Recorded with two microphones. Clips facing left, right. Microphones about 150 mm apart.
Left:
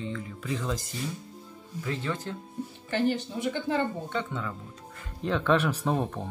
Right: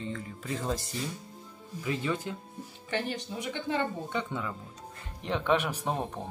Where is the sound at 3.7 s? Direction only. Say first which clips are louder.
Right 1 dB; 15° right (ahead or behind).